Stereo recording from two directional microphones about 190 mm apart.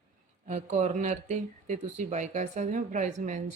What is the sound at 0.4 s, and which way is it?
Speech, 40° right (ahead or behind).